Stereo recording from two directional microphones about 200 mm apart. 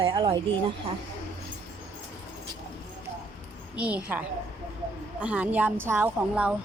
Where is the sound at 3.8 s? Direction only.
5° right (ahead or behind).